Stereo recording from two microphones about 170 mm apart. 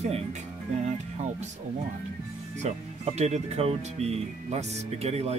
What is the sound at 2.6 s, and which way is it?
Speech, 40° right (ahead or behind).